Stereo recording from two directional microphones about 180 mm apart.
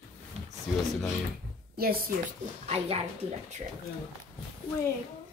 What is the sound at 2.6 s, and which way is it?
Speech, 35° right (ahead or behind).